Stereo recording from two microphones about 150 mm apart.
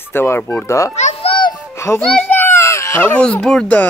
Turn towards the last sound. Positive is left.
turn(degrees=10)  # may be behind; listen again after turning